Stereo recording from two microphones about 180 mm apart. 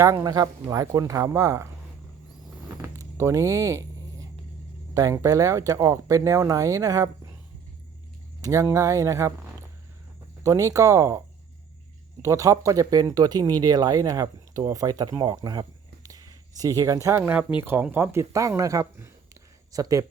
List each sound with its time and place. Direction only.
0.0 s speech: 20° right (ahead or behind)
2.6 s a sound: 15° right (ahead or behind)
4.9 s speech: 20° right (ahead or behind)
8.4 s speech: 15° right (ahead or behind)
10.4 s speech: 20° right (ahead or behind)
12.2 s speech: 15° right (ahead or behind)